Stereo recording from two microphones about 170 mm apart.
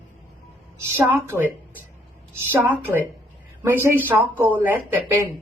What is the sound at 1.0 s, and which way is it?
A woman's voice, 10° right (ahead or behind).